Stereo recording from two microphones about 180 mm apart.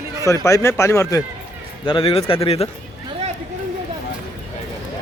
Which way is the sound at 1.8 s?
30° left (ahead or behind).